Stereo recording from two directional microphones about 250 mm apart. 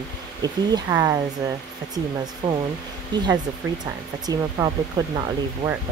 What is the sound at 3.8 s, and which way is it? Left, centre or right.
Speech, centre.